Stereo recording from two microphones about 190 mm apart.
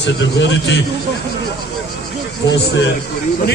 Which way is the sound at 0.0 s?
70° left (ahead or behind).